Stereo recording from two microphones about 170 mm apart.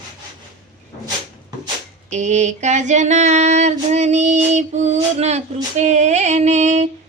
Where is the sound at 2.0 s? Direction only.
45° right (ahead or behind).